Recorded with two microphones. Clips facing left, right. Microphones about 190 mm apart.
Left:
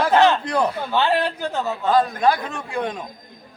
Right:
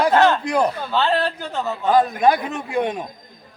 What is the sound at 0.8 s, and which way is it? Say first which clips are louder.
Speech: even; 15° left (ahead or behind).